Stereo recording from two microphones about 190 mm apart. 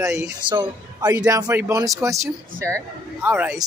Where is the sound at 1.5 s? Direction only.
10° right (ahead or behind).